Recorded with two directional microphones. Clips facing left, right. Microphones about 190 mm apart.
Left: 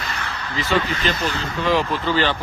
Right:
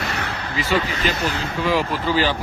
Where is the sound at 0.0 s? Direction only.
50° right (ahead or behind).